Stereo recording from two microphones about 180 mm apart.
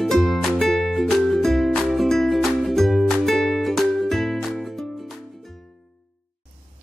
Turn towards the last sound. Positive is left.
turn(degrees=0)  # may be behind; listen again after turning